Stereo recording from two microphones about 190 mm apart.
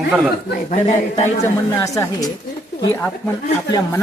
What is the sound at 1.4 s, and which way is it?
Speech, 15° left (ahead or behind).